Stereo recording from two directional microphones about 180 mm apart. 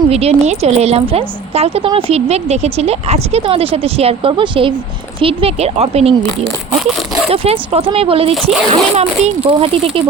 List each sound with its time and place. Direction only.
0.1 s a woman's voice: 35° right (ahead or behind)
7.3 s a woman's voice: 30° right (ahead or behind)